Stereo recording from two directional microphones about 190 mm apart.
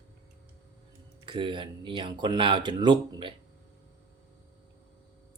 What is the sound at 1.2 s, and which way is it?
Speech, 25° right (ahead or behind).